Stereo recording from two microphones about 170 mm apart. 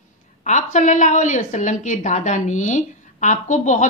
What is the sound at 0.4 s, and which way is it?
A woman's voice, 45° left (ahead or behind).